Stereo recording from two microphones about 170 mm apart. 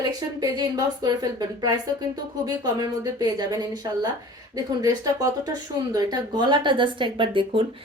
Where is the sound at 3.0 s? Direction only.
25° right (ahead or behind).